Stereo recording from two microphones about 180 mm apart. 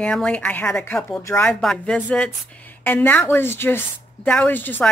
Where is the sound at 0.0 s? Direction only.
5° left (ahead or behind).